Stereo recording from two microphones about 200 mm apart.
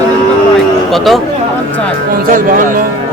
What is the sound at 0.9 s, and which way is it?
Speech, centre (ahead or behind).